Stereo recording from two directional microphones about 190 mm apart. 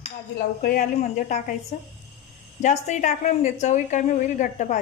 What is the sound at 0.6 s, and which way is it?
Speech, 45° left (ahead or behind).